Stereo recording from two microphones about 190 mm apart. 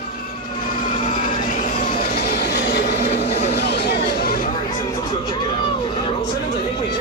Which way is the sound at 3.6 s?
60° left (ahead or behind).